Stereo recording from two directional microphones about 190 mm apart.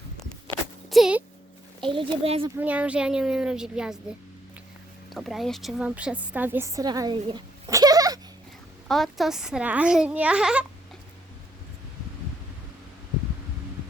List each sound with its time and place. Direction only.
0.9 s a sound: centre (ahead or behind)
1.9 s speech: 30° right (ahead or behind)
2.6 s a child's voice: 5° right (ahead or behind)
5.1 s a woman's voice: centre (ahead or behind); by 8.2 s 20° right (ahead or behind)
8.9 s a child's voice: centre (ahead or behind)